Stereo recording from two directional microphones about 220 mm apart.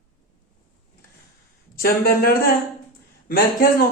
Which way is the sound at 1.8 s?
45° left (ahead or behind).